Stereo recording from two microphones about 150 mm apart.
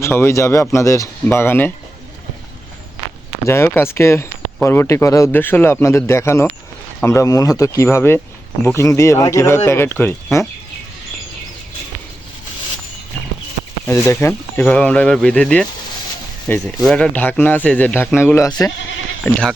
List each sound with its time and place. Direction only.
0.0 s speech: 15° left (ahead or behind)
3.4 s speech: 15° left (ahead or behind)
13.8 s speech: 20° left (ahead or behind)
19.2 s speech: 5° left (ahead or behind)